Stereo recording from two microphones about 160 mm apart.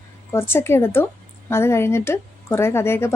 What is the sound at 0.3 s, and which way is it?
A woman's voice, 15° left (ahead or behind).